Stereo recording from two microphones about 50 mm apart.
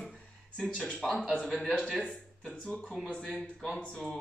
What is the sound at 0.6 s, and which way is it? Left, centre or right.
Speech, centre.